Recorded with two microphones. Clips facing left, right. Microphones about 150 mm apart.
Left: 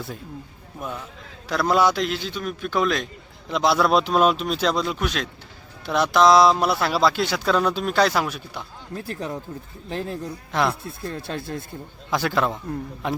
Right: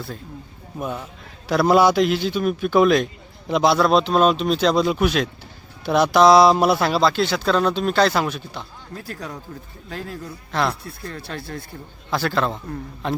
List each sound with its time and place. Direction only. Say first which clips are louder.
1.5 s a man's voice: right 4 dB; 10° right (ahead or behind)
3.8 s speech: right 2 dB; 5° left (ahead or behind)
9.0 s a man's voice: left 3 dB; 25° left (ahead or behind)